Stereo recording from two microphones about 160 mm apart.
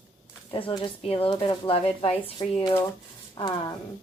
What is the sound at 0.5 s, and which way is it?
Speech, 35° left (ahead or behind).